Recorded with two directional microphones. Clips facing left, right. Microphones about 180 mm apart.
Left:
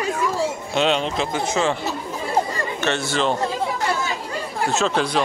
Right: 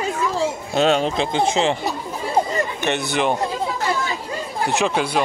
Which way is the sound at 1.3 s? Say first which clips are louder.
Right 2 dB; 25° right (ahead or behind).